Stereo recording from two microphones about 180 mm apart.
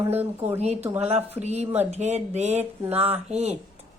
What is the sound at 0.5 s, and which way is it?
Speech, 35° right (ahead or behind).